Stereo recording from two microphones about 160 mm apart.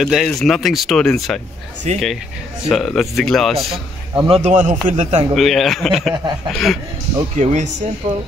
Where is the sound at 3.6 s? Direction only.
Centre (ahead or behind).